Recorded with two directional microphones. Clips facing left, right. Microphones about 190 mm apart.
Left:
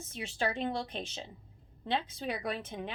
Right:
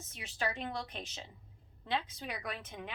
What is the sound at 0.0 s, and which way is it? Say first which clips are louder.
A woman's voice: left 4 dB; 30° left (ahead or behind).